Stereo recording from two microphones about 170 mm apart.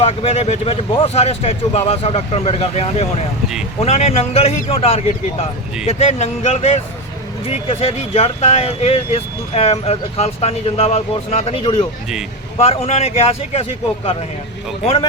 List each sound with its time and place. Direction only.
0.0 s speech: 35° left (ahead or behind)